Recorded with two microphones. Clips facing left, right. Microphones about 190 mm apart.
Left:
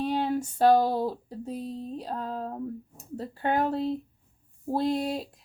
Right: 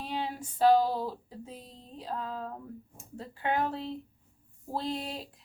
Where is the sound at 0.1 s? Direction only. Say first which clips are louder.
Left 8 dB; 45° left (ahead or behind).